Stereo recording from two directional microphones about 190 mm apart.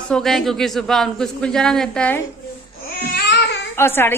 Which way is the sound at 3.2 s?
60° left (ahead or behind).